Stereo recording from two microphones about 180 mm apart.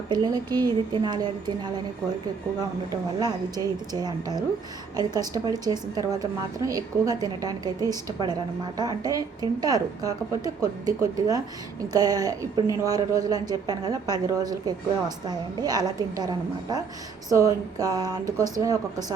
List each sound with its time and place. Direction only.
0.1 s a woman's voice: 25° right (ahead or behind)
2.6 s a woman's voice: 20° right (ahead or behind)